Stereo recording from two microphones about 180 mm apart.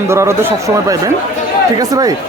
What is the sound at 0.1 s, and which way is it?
Speech, 15° right (ahead or behind).